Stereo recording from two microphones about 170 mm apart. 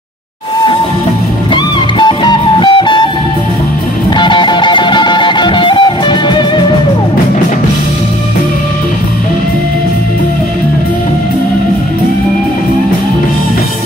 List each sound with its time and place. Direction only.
1.5 s music: 25° left (ahead or behind)
4.2 s music: 25° left (ahead or behind)